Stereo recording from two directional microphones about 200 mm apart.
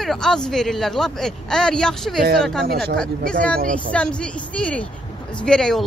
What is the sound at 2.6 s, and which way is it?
A woman's voice, 50° right (ahead or behind).